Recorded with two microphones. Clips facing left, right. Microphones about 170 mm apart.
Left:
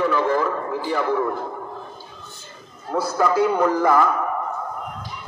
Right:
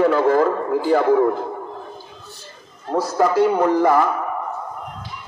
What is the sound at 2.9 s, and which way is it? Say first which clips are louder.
Speech: right 3 dB; 40° right (ahead or behind).